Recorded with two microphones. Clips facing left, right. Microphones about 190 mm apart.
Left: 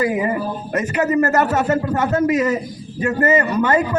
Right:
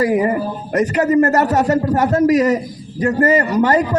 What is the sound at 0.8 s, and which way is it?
A man's voice, 35° right (ahead or behind).